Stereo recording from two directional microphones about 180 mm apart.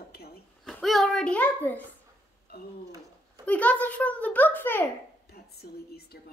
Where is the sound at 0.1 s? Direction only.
60° left (ahead or behind).